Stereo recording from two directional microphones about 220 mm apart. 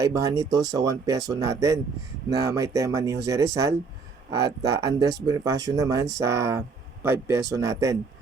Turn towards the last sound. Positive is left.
turn(degrees=-15)  # may be behind; listen again after turning